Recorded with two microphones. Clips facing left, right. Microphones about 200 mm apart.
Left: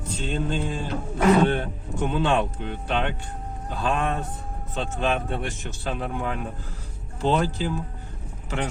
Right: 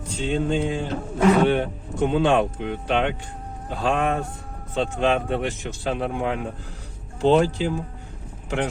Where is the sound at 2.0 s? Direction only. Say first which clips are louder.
Right 4 dB; 65° right (ahead or behind).